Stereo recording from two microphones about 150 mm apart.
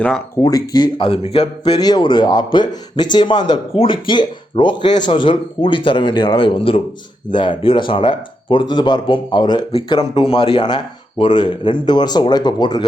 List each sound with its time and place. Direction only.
0.4 s speech: 30° left (ahead or behind)
1.6 s speech: 25° left (ahead or behind)